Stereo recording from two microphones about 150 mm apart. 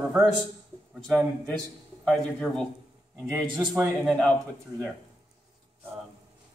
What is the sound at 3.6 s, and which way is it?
Speech, 20° right (ahead or behind).